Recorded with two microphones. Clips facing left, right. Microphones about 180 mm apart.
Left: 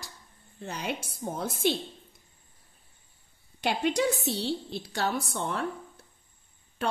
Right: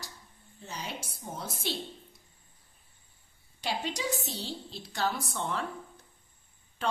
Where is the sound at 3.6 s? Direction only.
60° left (ahead or behind).